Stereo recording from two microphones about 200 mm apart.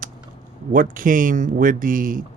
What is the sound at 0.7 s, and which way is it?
Speech, 45° right (ahead or behind).